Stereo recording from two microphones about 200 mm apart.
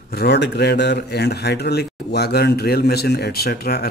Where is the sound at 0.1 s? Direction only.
55° left (ahead or behind).